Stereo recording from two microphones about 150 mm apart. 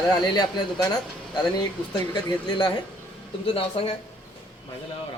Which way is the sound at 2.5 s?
30° left (ahead or behind).